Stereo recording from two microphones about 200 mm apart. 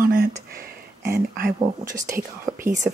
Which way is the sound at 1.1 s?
50° right (ahead or behind).